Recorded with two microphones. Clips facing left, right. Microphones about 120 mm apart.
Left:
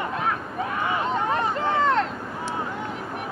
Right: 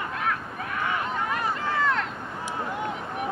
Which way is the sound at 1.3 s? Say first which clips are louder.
Left 4 dB; 30° left (ahead or behind).